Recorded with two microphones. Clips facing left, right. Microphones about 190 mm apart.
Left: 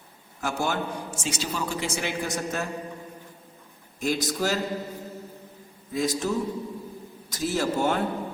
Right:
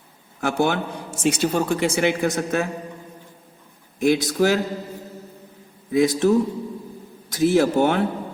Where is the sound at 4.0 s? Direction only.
60° right (ahead or behind).